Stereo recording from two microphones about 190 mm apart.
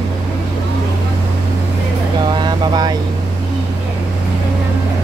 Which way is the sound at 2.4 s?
20° right (ahead or behind).